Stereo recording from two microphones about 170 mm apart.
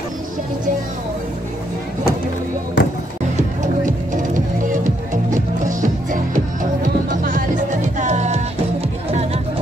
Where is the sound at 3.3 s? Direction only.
50° right (ahead or behind).